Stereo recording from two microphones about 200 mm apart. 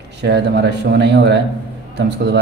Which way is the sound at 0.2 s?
55° right (ahead or behind).